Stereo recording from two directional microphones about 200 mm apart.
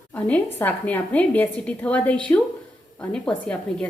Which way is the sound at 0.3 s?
5° left (ahead or behind).